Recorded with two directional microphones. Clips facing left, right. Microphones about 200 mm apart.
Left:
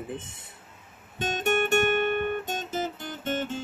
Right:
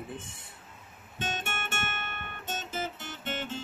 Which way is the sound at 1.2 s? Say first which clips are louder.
Left 11 dB; 40° left (ahead or behind).